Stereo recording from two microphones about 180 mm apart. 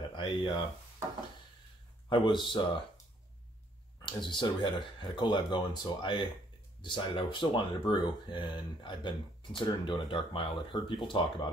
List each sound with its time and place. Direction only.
0.1 s a sound: 25° left (ahead or behind)
2.0 s speech: 25° left (ahead or behind)
4.0 s speech: 25° left (ahead or behind)